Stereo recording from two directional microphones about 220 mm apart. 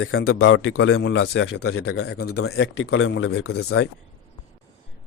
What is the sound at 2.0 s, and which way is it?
Speech, 50° left (ahead or behind).